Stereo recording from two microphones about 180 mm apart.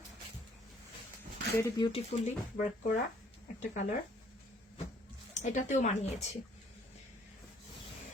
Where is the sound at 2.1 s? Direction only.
45° left (ahead or behind).